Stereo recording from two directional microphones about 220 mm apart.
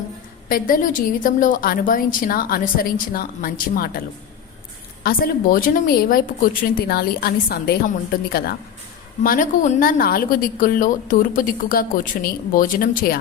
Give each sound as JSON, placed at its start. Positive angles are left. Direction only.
{"t": 0.4, "sound": "a woman's voice", "side_deg": 40}
{"t": 5.0, "sound": "a woman's voice", "side_deg": 40}